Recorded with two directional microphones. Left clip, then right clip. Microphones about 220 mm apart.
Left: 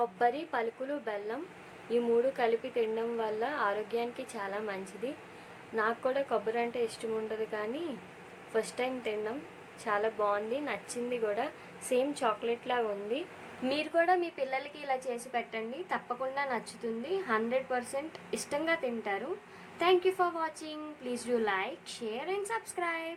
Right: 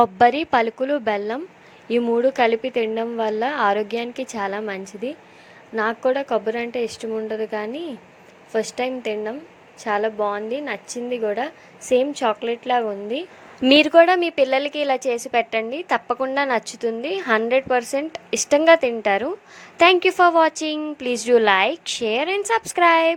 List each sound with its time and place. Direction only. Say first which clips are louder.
0.0 s a woman's voice: right 14 dB; 40° right (ahead or behind)
13.7 s a woman's voice: right 16 dB; 40° right (ahead or behind)